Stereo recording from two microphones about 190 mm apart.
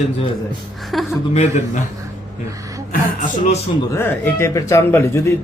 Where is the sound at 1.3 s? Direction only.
35° left (ahead or behind).